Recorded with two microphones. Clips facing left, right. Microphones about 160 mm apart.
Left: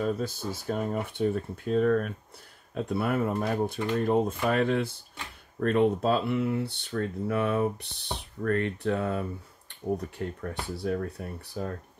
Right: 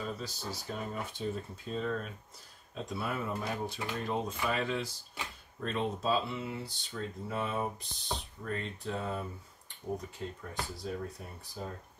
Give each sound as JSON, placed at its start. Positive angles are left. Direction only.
{"t": 0.0, "sound": "speech", "side_deg": 55}